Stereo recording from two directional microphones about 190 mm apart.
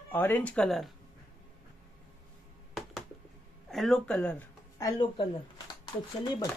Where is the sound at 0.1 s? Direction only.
10° left (ahead or behind).